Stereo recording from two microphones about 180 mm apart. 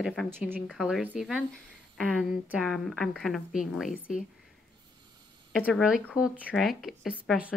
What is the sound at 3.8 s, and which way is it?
Speech, 45° left (ahead or behind).